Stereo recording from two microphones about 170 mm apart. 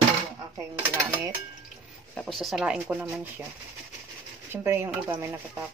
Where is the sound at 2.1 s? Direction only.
Centre (ahead or behind).